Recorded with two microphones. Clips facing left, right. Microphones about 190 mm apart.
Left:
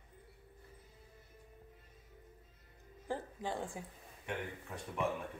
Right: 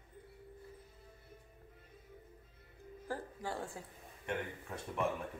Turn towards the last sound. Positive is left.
turn(degrees=0)  # may be behind; listen again after turning